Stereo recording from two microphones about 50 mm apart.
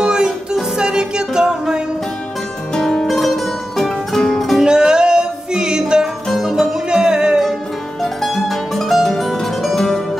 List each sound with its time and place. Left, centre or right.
0.0 s music: centre
2.8 s music: centre
4.6 s music: centre
6.2 s music: centre
6.9 s music: centre
8.0 s music: centre